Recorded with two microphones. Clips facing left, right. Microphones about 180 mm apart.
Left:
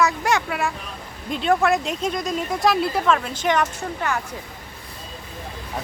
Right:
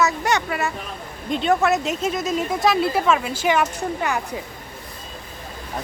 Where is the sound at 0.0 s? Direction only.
Centre (ahead or behind).